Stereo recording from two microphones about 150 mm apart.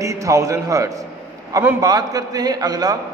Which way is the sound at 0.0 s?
20° right (ahead or behind).